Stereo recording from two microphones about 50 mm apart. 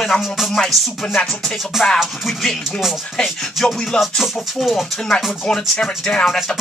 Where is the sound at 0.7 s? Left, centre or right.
Centre.